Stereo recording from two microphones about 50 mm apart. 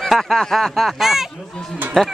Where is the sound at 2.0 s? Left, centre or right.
Centre.